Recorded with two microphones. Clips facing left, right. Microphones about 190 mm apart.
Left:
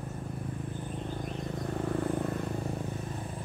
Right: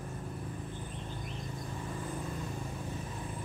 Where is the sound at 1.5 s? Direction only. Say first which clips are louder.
Left 12 dB; 65° left (ahead or behind).